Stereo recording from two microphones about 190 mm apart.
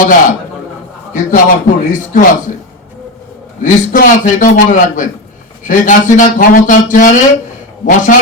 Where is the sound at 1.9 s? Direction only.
45° left (ahead or behind).